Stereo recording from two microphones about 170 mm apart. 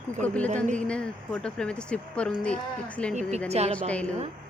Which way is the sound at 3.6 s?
40° right (ahead or behind).